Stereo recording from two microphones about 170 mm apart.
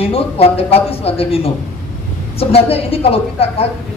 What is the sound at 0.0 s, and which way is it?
A woman's voice, 35° left (ahead or behind).